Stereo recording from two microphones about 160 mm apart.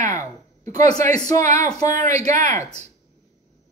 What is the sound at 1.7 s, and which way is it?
Speech, 25° left (ahead or behind).